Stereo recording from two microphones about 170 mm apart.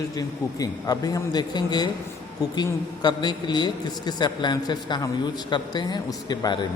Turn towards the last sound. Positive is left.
turn(degrees=25)  # may be behind; listen again after turning